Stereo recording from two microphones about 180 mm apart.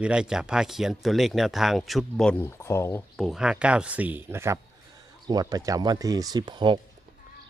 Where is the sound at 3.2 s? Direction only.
5° right (ahead or behind); by 6.8 s 25° right (ahead or behind).